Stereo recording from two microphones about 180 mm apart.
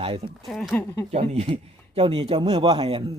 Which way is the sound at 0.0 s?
30° right (ahead or behind).